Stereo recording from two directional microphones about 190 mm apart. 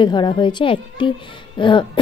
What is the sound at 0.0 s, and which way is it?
A woman's voice, 25° left (ahead or behind).